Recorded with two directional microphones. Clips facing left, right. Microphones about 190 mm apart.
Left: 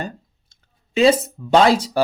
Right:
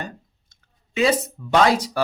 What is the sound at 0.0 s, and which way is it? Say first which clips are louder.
Clicking: left 4 dB; 30° left (ahead or behind).